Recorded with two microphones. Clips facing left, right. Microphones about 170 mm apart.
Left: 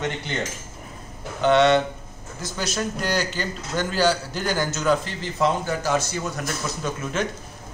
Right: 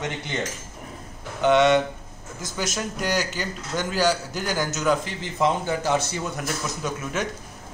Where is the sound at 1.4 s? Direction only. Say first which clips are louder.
Left 1 dB; 10° right (ahead or behind).